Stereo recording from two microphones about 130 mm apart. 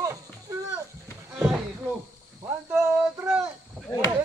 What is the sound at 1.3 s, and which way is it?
Speech, 5° right (ahead or behind).